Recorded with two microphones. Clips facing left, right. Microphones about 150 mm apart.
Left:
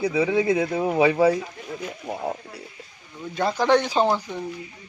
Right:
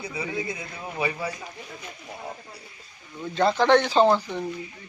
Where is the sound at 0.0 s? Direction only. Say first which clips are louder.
Left 10 dB; 90° left.